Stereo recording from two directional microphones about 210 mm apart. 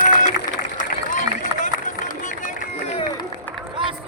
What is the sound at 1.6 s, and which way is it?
Run, 35° left (ahead or behind).